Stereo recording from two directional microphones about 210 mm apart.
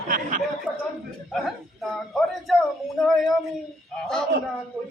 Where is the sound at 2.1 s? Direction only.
Centre (ahead or behind).